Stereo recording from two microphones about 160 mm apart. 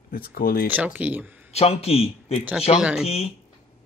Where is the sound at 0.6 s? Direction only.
10° right (ahead or behind).